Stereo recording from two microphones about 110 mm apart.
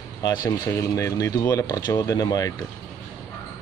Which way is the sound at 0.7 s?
25° left (ahead or behind).